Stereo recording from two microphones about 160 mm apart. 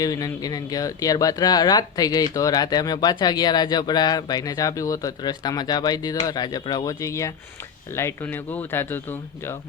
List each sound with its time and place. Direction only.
0.0 s speech: 20° left (ahead or behind)